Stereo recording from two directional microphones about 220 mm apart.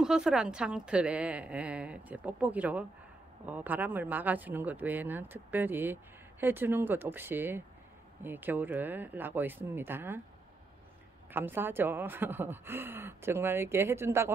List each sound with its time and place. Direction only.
0.0 s a woman's voice: 5° right (ahead or behind)
11.3 s speech: 10° right (ahead or behind)